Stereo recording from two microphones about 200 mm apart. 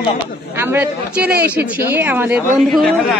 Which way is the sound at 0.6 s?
10° right (ahead or behind).